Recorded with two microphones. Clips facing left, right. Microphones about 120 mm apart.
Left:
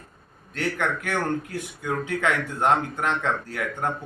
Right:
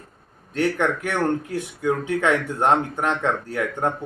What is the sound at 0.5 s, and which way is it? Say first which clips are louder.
Speech: right 5 dB; 25° right (ahead or behind).